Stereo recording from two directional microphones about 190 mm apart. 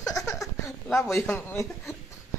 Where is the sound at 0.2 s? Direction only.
15° left (ahead or behind).